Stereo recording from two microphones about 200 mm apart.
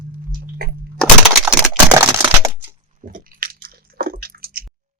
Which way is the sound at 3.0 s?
45° right (ahead or behind).